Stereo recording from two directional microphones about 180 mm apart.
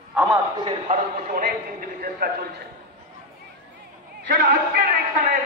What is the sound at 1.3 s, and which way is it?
A man's voice, 50° right (ahead or behind).